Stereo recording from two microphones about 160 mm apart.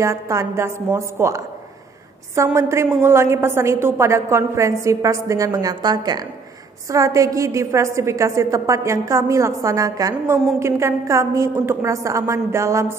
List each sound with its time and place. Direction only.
0.0 s a woman's voice: 20° right (ahead or behind)